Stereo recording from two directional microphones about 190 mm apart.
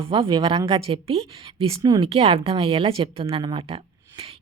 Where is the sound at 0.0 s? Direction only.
30° right (ahead or behind).